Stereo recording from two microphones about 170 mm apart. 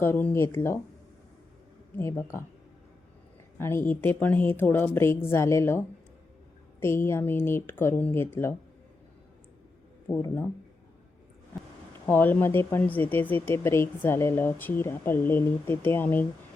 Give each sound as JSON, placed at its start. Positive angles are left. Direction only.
{"t": 0.0, "sound": "speech", "side_deg": 10}
{"t": 2.0, "sound": "speech", "side_deg": 15}
{"t": 3.6, "sound": "speech", "side_deg": 15}
{"t": 10.1, "sound": "speech", "side_deg": 15}
{"t": 12.0, "sound": "speech", "side_deg": 10}